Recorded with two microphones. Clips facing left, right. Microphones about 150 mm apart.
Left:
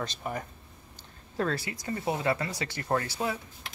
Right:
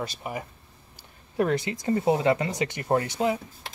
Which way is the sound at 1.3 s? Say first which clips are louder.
Right 6 dB; 20° right (ahead or behind).